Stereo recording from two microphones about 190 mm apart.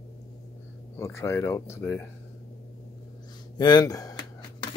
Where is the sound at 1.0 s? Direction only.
15° left (ahead or behind).